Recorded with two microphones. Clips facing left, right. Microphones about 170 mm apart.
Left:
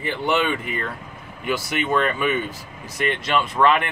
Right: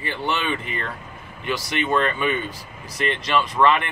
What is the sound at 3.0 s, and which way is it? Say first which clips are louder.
Speech: left 1 dB; 55° left (ahead or behind).